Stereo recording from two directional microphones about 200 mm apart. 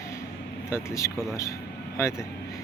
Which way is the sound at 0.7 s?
15° left (ahead or behind).